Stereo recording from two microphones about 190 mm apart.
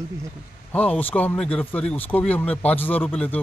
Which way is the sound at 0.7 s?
10° left (ahead or behind).